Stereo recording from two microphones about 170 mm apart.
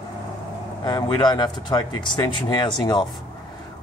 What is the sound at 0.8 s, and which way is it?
Speech, 25° left (ahead or behind).